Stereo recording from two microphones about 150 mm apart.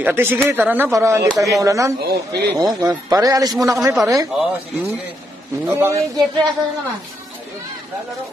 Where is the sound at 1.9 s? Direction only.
90° right.